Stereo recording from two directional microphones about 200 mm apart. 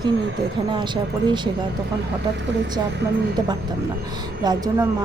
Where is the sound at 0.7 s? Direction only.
25° right (ahead or behind).